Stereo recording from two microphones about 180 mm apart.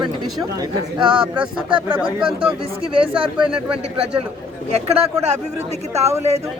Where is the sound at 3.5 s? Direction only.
5° right (ahead or behind).